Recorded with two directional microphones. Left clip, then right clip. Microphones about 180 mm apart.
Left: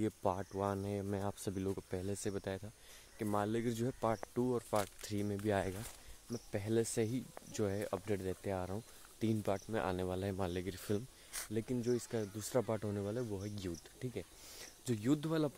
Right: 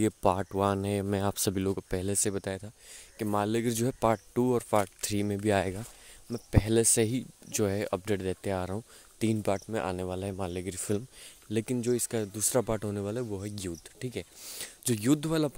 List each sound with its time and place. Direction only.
0.0 s speech: 55° right (ahead or behind); by 2.7 s 40° right (ahead or behind)
3.2 s speech: 50° right (ahead or behind); by 11.0 s 30° right (ahead or behind)
11.5 s speech: 50° right (ahead or behind)